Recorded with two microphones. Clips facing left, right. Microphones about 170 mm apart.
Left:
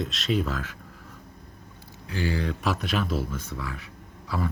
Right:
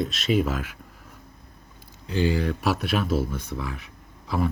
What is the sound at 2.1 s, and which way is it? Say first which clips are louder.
Speech: right 5 dB; 25° right (ahead or behind).